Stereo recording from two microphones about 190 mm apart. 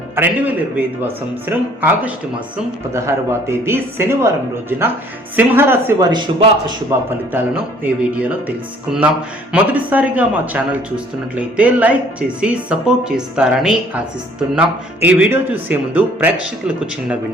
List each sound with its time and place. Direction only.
0.2 s speech: 10° right (ahead or behind)
3.7 s speech: 10° right (ahead or behind)
6.1 s a man's voice: 25° right (ahead or behind)
7.3 s a woman's voice: 10° right (ahead or behind)